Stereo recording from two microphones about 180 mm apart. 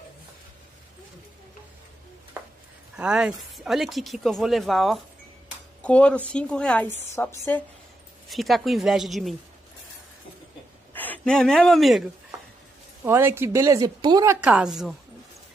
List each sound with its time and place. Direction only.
3.0 s a woman's voice: 5° right (ahead or behind); by 7.6 s 10° left (ahead or behind)
8.3 s speech: centre (ahead or behind)
10.9 s speech: 10° left (ahead or behind)
13.0 s a woman's voice: 15° right (ahead or behind)
14.5 s speech: centre (ahead or behind)